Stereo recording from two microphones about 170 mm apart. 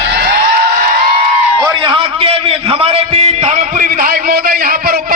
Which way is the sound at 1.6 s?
30° right (ahead or behind).